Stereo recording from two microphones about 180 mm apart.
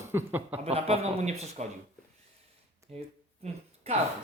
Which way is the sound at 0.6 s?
35° right (ahead or behind).